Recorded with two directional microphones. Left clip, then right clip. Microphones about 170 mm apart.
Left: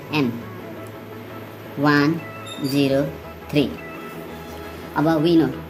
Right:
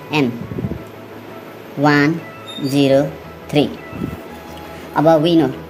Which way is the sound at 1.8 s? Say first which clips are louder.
Right 4 dB; 20° right (ahead or behind).